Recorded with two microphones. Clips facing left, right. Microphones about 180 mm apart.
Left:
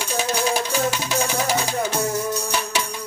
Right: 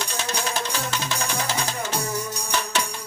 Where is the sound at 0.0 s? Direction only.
10° left (ahead or behind).